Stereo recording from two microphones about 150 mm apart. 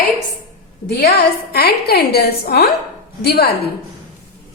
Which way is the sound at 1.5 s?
90° left.